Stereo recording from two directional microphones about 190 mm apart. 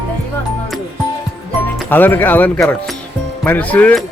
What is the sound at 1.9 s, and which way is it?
Speech, 10° left (ahead or behind).